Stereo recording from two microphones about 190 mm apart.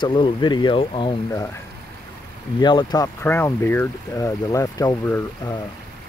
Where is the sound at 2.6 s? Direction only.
20° left (ahead or behind).